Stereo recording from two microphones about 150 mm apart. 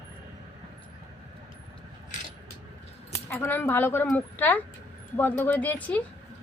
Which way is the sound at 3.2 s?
15° left (ahead or behind).